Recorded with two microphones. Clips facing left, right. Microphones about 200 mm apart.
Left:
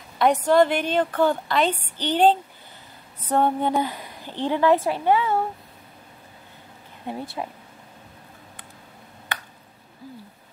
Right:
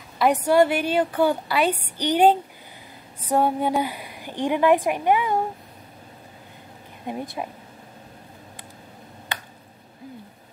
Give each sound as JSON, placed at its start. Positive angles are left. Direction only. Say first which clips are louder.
{"t": 0.2, "sound": "a woman's voice", "louder": "even", "side_deg": -10}
{"t": 7.1, "sound": "a woman's voice", "louder": "right 1 dB", "side_deg": -15}